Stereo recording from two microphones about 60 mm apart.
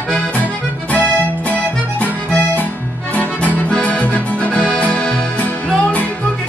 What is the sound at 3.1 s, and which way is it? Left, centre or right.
Accordion, left.